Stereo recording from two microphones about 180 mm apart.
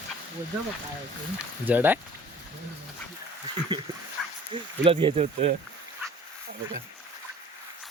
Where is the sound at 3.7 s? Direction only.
25° right (ahead or behind).